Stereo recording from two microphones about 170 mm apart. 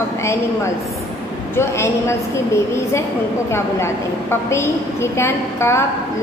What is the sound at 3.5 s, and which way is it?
A woman's voice, 15° left (ahead or behind).